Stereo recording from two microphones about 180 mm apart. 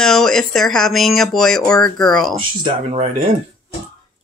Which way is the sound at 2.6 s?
30° right (ahead or behind).